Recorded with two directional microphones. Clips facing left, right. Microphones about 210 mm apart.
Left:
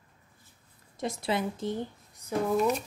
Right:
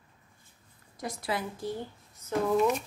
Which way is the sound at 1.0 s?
25° left (ahead or behind).